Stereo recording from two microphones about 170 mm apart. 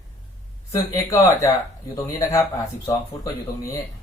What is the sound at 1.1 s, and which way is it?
Speech, 15° left (ahead or behind).